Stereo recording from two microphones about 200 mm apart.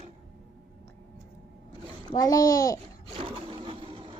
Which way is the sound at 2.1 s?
20° left (ahead or behind).